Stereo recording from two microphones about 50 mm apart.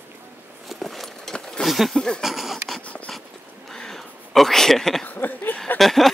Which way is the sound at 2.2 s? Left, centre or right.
Centre.